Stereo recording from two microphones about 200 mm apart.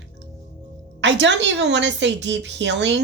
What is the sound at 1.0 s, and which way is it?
A woman's voice, 60° right (ahead or behind).